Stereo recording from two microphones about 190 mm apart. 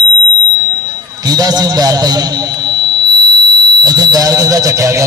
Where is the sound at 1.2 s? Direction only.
20° right (ahead or behind).